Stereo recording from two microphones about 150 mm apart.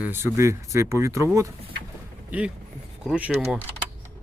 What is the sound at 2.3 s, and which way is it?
Speech, 10° right (ahead or behind).